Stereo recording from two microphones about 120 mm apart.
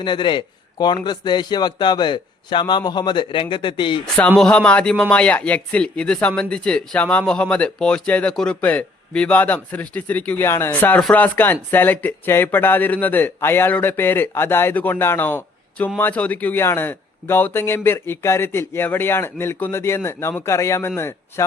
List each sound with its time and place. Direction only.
0.0 s a man's voice: 40° left (ahead or behind)
4.4 s a man's voice: 10° left (ahead or behind)